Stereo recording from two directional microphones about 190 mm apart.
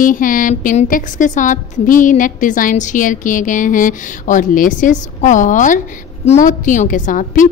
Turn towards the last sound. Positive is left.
turn(degrees=45)  # may be behind; listen again after turning